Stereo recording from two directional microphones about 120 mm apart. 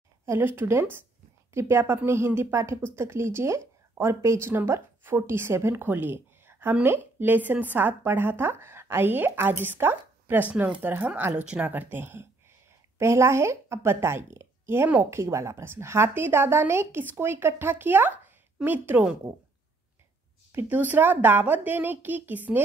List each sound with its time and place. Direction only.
0.2 s a woman's voice: 20° right (ahead or behind)
20.5 s a woman's voice: 15° right (ahead or behind)